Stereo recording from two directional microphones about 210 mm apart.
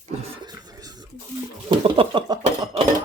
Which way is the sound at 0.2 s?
20° right (ahead or behind).